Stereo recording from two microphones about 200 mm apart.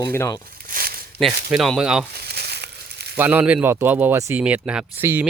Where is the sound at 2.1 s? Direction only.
55° right (ahead or behind).